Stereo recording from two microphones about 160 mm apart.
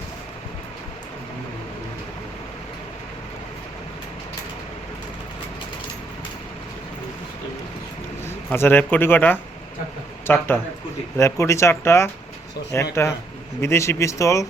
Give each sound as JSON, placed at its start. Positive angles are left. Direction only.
{"t": 8.4, "sound": "speech", "side_deg": 15}